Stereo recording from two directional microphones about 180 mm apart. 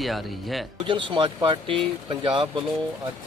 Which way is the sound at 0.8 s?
25° right (ahead or behind).